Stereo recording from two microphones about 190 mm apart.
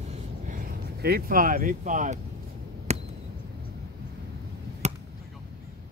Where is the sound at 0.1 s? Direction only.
45° right (ahead or behind).